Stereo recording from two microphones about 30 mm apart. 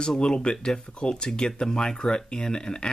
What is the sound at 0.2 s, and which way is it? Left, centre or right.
Speech, left.